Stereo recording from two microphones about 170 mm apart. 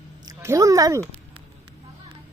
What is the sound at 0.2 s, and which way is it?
Speech, 20° right (ahead or behind).